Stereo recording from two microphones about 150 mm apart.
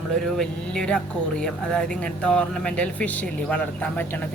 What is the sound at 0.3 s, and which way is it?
Speech, 5° left (ahead or behind).